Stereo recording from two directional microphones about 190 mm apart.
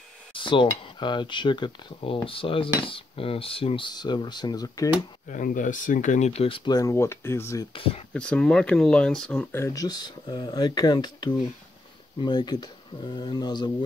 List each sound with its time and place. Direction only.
0.3 s speech: 25° left (ahead or behind)
5.3 s speech: 45° left (ahead or behind); by 7.6 s 15° left (ahead or behind)
7.7 s speech: 30° left (ahead or behind)
8.1 s speech: 5° left (ahead or behind); by 13.7 s 25° left (ahead or behind)